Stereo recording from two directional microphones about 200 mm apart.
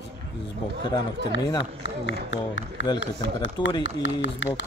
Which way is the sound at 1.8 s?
70° left (ahead or behind).